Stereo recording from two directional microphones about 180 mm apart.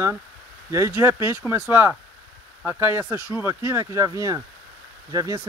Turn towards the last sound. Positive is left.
turn(degrees=-20)  # may be behind; listen again after turning